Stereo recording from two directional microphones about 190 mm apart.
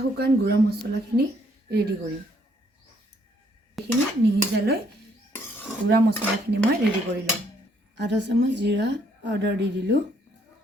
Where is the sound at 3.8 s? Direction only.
Centre (ahead or behind).